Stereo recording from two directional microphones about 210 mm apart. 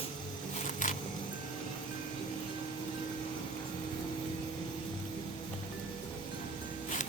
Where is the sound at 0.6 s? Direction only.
40° left (ahead or behind).